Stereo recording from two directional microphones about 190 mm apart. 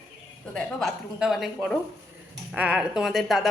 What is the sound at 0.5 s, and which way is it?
A woman's voice, centre (ahead or behind).